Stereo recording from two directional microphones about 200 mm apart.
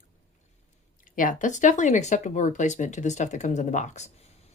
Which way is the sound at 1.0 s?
40° left (ahead or behind).